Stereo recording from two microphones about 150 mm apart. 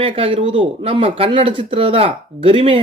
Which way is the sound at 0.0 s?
35° right (ahead or behind).